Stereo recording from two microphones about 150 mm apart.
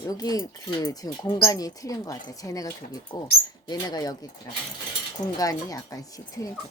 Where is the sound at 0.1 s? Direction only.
25° left (ahead or behind).